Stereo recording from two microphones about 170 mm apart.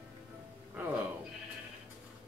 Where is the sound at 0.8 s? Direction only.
10° right (ahead or behind).